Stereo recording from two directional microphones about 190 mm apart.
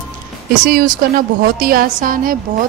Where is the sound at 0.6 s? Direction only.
50° right (ahead or behind).